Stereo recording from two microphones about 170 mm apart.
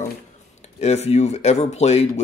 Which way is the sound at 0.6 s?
40° left (ahead or behind).